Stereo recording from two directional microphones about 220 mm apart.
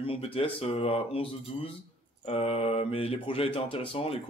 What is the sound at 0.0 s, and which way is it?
Speech, 25° left (ahead or behind).